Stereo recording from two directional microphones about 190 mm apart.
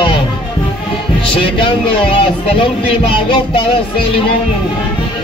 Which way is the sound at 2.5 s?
25° left (ahead or behind).